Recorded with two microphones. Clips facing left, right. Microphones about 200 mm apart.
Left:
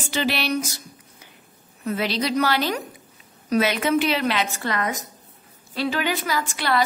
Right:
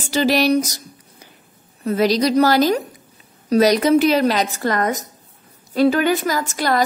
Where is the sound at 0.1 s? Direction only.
40° right (ahead or behind).